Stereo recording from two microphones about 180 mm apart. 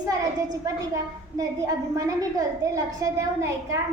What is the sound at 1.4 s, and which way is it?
A woman's voice, 20° right (ahead or behind).